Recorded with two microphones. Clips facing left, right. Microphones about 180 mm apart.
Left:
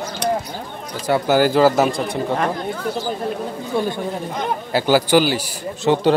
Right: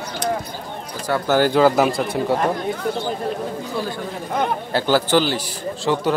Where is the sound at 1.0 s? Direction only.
15° left (ahead or behind).